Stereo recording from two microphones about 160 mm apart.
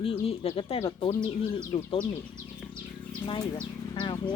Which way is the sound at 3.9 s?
30° left (ahead or behind).